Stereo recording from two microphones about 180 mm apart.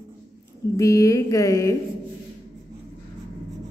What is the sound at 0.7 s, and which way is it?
A woman's voice, 15° left (ahead or behind).